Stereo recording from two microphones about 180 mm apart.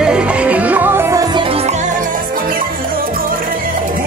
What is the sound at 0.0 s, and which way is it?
Music, 5° right (ahead or behind).